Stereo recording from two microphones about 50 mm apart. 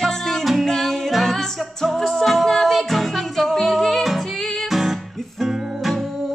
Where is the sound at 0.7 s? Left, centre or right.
Centre.